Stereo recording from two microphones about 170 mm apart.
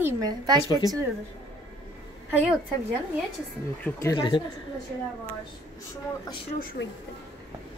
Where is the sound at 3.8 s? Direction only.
20° left (ahead or behind).